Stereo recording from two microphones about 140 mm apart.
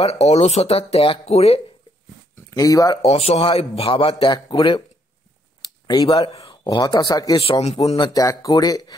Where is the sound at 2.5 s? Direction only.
25° left (ahead or behind).